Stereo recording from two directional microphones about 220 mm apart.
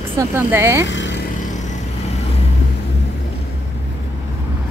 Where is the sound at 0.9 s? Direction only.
55° left (ahead or behind).